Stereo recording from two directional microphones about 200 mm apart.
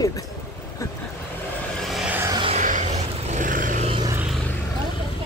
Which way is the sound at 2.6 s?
35° right (ahead or behind).